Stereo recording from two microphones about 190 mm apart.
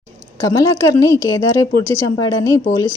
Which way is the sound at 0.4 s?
15° left (ahead or behind).